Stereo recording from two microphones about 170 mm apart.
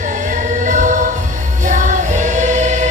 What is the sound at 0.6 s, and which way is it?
Choir, 50° right (ahead or behind).